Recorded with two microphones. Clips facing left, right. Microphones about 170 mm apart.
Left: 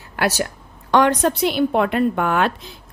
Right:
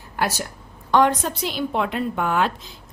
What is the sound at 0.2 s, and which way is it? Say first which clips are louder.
Speech: left 4 dB; 75° left (ahead or behind).